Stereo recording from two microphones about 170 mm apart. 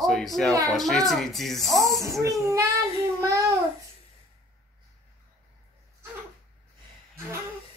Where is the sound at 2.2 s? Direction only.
20° right (ahead or behind).